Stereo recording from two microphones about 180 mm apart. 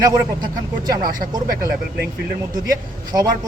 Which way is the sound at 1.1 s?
55° right (ahead or behind).